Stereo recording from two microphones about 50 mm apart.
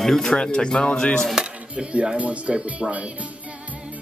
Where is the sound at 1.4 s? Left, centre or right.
Centre.